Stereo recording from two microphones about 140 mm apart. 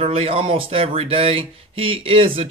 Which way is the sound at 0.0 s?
45° right (ahead or behind).